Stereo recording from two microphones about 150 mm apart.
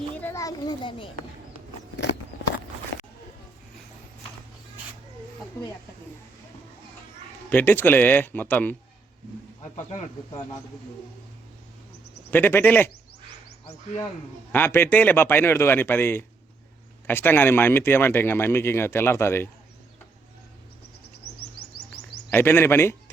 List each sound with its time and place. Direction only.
0.1 s a child's voice: 15° left (ahead or behind); by 1.0 s 35° left (ahead or behind)
7.5 s speech: 15° left (ahead or behind)
12.3 s speech: 15° left (ahead or behind)
14.5 s speech: 15° left (ahead or behind)
22.3 s speech: 15° left (ahead or behind)